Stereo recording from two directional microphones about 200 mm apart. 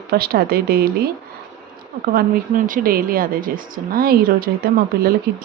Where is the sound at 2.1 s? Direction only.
45° right (ahead or behind).